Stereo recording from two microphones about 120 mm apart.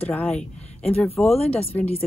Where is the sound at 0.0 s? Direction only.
10° left (ahead or behind).